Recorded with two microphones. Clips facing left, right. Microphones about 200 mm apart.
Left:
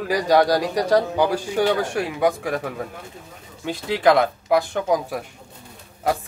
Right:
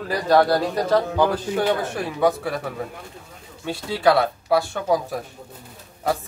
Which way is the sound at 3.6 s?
15° left (ahead or behind).